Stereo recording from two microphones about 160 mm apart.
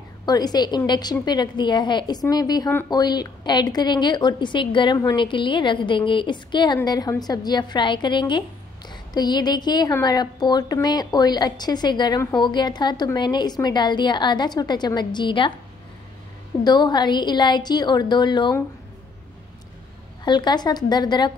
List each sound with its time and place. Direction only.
0.2 s a woman's voice: 25° left (ahead or behind)
16.6 s a woman's voice: 25° left (ahead or behind)
20.2 s a woman's voice: 25° left (ahead or behind)